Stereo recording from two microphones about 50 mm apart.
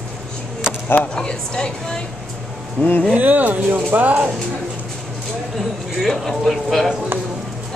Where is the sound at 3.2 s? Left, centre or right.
Right.